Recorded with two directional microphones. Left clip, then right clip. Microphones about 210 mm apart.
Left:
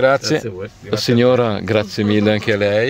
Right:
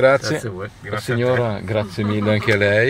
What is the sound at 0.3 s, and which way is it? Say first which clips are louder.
Speech: left 4 dB; 20° left (ahead or behind).